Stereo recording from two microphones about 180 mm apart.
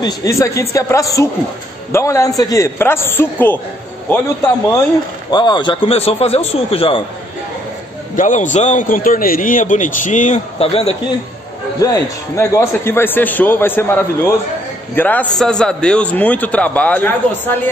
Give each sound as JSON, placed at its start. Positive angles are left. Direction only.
{"t": 0.0, "sound": "a man's voice", "side_deg": 15}
{"t": 5.3, "sound": "a man's voice", "side_deg": 25}
{"t": 8.2, "sound": "a man's voice", "side_deg": 45}
{"t": 11.8, "sound": "a man's voice", "side_deg": 15}